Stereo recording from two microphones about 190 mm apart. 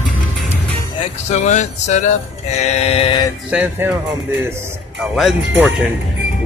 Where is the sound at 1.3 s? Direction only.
40° left (ahead or behind).